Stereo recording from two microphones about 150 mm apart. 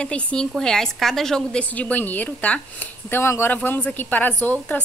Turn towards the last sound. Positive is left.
turn(degrees=10)  # may be behind; listen again after turning